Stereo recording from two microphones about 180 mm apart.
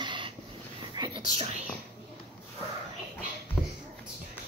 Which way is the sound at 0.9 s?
25° right (ahead or behind).